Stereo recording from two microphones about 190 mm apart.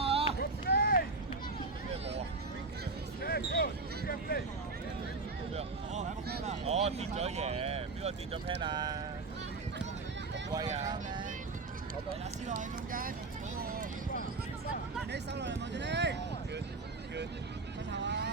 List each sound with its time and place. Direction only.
0.0 s run: 30° right (ahead or behind)
0.3 s run: 55° left (ahead or behind)
3.2 s basketball bounce: 50° left (ahead or behind)
5.5 s a sound: 35° right (ahead or behind)
8.6 s speech: 20° right (ahead or behind)
10.8 s vehicle: 25° right (ahead or behind)
12.5 s a sound: 45° right (ahead or behind)
15.1 s a sound: 65° right (ahead or behind)
17.9 s vehicle: 65° right (ahead or behind)